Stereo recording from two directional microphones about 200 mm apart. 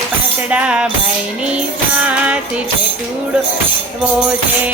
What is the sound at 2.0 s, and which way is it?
Music, 5° right (ahead or behind).